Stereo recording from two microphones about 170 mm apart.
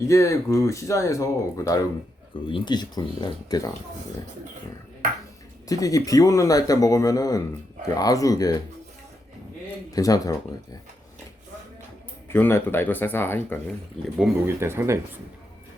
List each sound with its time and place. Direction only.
0.0 s speech: 15° left (ahead or behind)
5.6 s speech: 20° left (ahead or behind)
9.9 s speech: 20° left (ahead or behind)
12.3 s speech: 15° left (ahead or behind)
14.2 s speech: 15° right (ahead or behind)